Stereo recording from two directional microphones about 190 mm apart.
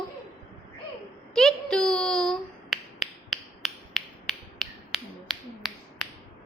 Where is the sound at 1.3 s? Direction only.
Centre (ahead or behind).